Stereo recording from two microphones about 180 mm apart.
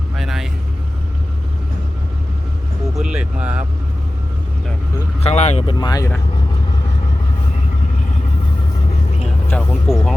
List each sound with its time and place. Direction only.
0.2 s vehicle: centre (ahead or behind)
3.0 s speech: 5° right (ahead or behind)
5.2 s speech: 40° left (ahead or behind)
5.7 s speech: 20° left (ahead or behind)
9.2 s speech: 5° left (ahead or behind)